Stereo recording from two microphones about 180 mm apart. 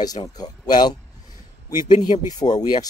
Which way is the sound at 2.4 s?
20° left (ahead or behind).